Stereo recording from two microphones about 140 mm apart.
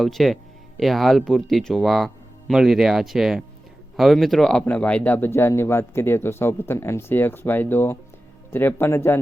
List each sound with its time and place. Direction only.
0.0 s speech: centre (ahead or behind); by 9.1 s 15° left (ahead or behind)